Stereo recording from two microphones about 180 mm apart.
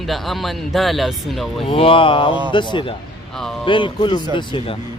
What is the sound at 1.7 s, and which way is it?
Speech, 30° left (ahead or behind).